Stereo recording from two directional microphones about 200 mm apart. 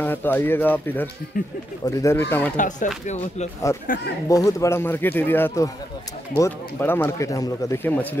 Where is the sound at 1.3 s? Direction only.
40° left (ahead or behind).